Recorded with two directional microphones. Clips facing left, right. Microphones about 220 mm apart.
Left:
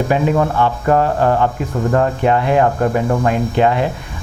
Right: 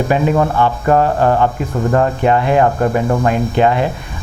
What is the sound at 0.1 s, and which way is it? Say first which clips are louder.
Speech: right 1 dB; 20° right (ahead or behind).